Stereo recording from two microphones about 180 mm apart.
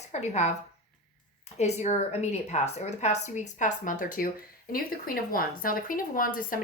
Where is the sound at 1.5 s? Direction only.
40° left (ahead or behind).